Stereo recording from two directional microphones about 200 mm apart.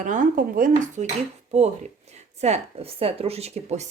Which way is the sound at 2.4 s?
30° right (ahead or behind).